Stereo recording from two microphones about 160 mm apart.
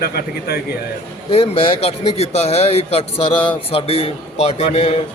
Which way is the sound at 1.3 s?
35° left (ahead or behind).